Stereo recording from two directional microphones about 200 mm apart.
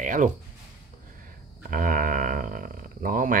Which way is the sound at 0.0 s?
40° right (ahead or behind).